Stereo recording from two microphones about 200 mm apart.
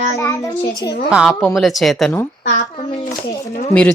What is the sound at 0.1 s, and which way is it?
Speech, 15° left (ahead or behind).